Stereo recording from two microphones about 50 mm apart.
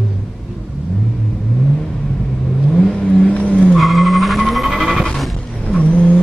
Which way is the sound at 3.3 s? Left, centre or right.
Left.